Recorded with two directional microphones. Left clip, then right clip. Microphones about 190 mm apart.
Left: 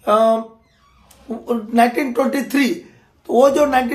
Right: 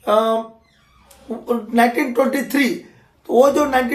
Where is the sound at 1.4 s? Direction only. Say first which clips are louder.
Left 1 dB; 15° left (ahead or behind).